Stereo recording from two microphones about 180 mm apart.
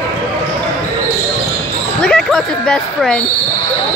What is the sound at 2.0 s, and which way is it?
Speech, 5° left (ahead or behind).